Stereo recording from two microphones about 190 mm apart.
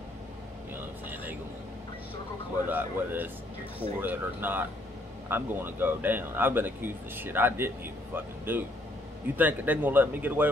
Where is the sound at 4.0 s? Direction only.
10° right (ahead or behind).